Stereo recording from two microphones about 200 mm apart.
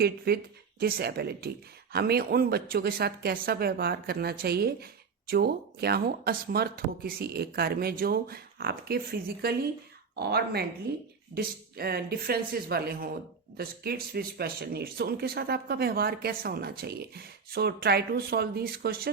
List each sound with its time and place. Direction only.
0.3 s speech: 50° right (ahead or behind)